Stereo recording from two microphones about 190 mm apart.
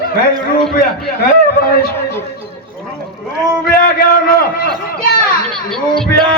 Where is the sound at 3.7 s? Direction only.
50° left (ahead or behind).